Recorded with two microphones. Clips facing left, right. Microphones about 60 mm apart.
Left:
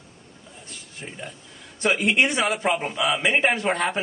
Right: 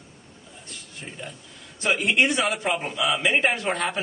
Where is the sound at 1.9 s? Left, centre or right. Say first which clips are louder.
Even; centre.